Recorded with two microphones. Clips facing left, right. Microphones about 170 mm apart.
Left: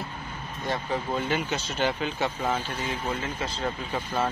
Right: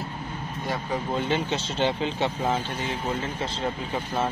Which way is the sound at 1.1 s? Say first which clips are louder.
Right 3 dB; 25° right (ahead or behind).